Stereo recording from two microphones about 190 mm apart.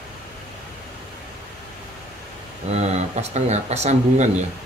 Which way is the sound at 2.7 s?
35° right (ahead or behind).